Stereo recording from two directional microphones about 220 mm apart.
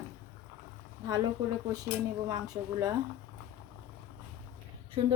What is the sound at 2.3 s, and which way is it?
Speech, 15° right (ahead or behind).